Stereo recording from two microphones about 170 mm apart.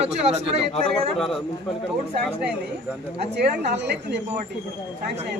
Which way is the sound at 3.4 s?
80° right.